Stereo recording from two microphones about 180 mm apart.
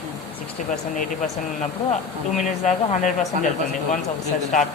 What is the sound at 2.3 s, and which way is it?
Speech, 40° left (ahead or behind).